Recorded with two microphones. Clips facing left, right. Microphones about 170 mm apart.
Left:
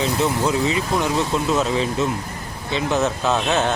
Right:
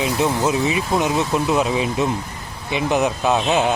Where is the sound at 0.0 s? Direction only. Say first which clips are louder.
Right 1 dB; 20° right (ahead or behind).